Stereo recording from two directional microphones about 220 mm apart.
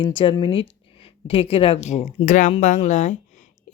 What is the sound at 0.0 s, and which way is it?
Speech, 25° left (ahead or behind).